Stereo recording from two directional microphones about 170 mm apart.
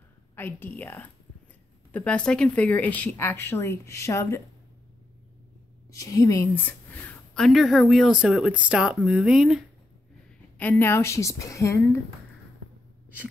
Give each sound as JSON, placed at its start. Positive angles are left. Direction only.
{"t": 0.4, "sound": "speech", "side_deg": 10}
{"t": 5.9, "sound": "a woman's voice", "side_deg": 20}
{"t": 10.6, "sound": "speech", "side_deg": 10}